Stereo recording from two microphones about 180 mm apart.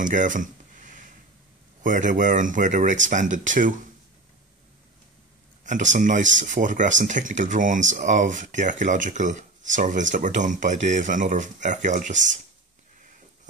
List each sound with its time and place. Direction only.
0.0 s a sound: 45° right (ahead or behind)
1.8 s speech: 45° right (ahead or behind)
5.7 s speech: 45° right (ahead or behind)